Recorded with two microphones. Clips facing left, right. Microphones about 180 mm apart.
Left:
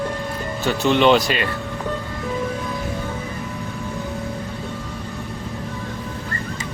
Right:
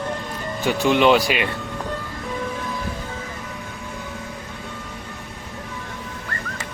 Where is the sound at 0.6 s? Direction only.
10° right (ahead or behind).